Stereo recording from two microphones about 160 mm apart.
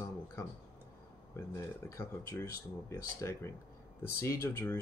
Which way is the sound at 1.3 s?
15° left (ahead or behind).